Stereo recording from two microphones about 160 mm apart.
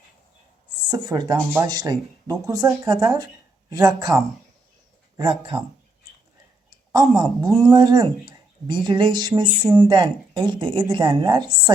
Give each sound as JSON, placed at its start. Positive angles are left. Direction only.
{"t": 0.9, "sound": "speech", "side_deg": -25}
{"t": 7.2, "sound": "speech", "side_deg": -20}